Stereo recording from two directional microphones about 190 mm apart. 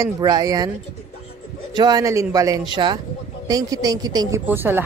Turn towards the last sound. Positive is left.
turn(degrees=-10)  # may be behind; listen again after turning